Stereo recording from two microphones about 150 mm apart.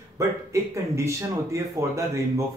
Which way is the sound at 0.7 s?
20° right (ahead or behind).